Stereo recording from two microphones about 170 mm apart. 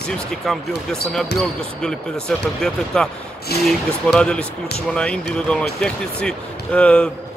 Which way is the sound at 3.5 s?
65° left (ahead or behind).